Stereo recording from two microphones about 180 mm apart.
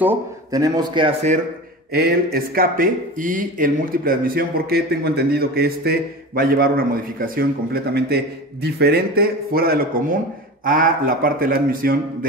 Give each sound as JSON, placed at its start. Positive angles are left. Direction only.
{"t": 0.0, "sound": "a man's voice", "side_deg": -15}
{"t": 1.9, "sound": "speech", "side_deg": -60}